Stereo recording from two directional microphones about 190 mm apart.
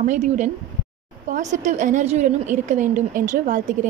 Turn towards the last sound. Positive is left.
turn(degrees=-40)  # may be behind; listen again after turning